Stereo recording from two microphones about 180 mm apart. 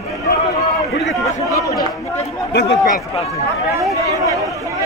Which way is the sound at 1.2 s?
15° left (ahead or behind).